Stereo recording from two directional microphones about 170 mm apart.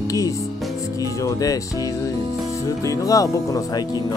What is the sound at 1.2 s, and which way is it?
Speech, 20° left (ahead or behind).